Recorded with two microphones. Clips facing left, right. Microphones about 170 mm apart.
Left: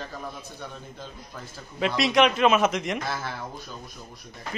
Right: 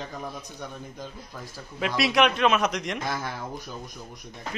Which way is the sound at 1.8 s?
Centre (ahead or behind).